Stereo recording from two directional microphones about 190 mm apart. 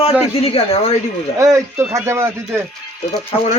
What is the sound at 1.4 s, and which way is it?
Speech, 15° right (ahead or behind).